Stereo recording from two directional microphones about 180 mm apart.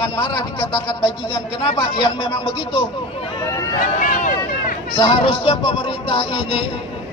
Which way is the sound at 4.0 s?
45° left (ahead or behind).